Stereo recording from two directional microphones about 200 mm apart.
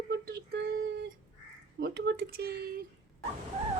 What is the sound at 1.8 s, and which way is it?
Speech, 55° right (ahead or behind).